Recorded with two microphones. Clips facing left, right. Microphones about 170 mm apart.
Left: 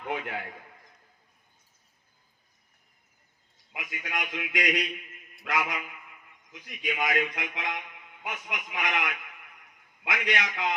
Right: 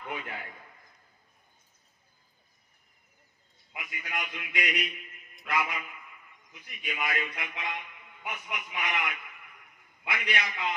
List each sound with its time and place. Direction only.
3.8 s a man's voice: 90° left
5.4 s mantra: 90° left
6.5 s a man's voice: 90° left